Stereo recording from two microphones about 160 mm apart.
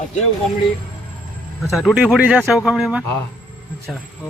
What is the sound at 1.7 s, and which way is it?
Speech, centre (ahead or behind).